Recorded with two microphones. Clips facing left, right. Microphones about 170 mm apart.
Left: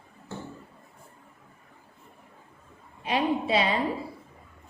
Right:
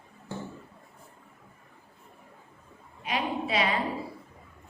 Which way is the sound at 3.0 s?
30° left (ahead or behind).